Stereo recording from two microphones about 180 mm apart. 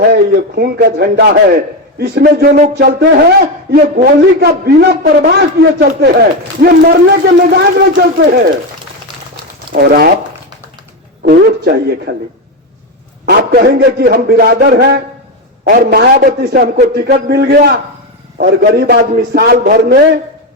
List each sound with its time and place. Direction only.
0.1 s a man's voice: 60° right (ahead or behind)
9.7 s a man's voice: 55° right (ahead or behind)
11.2 s a man's voice: 60° right (ahead or behind)
13.2 s a man's voice: 60° right (ahead or behind)